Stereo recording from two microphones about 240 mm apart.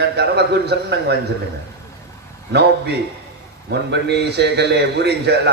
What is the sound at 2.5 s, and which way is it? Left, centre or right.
A man's voice, right.